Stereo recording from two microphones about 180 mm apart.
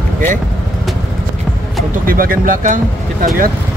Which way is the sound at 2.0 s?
50° right (ahead or behind).